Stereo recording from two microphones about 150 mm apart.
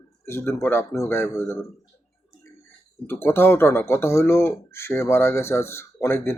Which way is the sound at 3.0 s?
15° left (ahead or behind).